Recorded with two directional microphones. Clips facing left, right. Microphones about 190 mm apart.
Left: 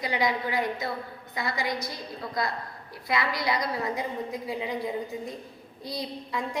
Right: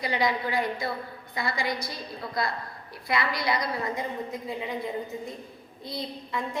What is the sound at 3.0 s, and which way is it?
A woman's voice, 20° left (ahead or behind).